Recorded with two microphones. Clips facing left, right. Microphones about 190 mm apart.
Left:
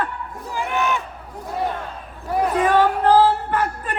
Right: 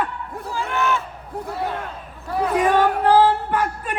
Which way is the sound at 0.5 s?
15° left (ahead or behind).